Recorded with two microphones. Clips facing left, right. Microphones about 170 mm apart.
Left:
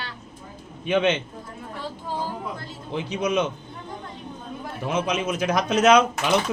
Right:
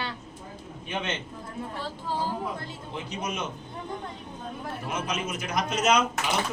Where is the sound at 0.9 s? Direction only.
80° left.